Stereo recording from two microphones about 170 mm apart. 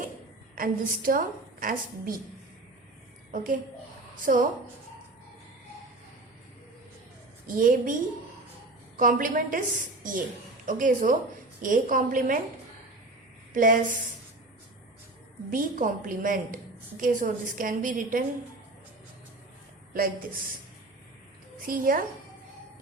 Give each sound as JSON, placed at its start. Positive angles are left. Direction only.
{"t": 0.5, "sound": "a woman's voice", "side_deg": -55}
{"t": 3.3, "sound": "a woman's voice", "side_deg": -50}
{"t": 7.4, "sound": "a woman's voice", "side_deg": -55}
{"t": 9.0, "sound": "a woman's voice", "side_deg": -55}
{"t": 13.5, "sound": "a woman's voice", "side_deg": -50}
{"t": 15.5, "sound": "a woman's voice", "side_deg": -55}
{"t": 21.7, "sound": "a woman's voice", "side_deg": -55}